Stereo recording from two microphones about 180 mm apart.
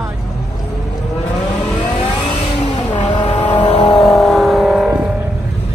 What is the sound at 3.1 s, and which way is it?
Vehicle, 30° left (ahead or behind).